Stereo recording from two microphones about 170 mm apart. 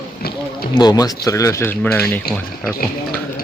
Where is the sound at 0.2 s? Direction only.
65° left (ahead or behind).